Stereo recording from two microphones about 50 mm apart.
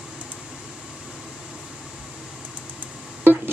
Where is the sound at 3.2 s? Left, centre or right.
Right.